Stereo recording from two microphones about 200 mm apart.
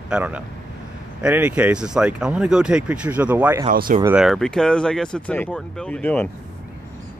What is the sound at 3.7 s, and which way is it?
Speech, 45° right (ahead or behind).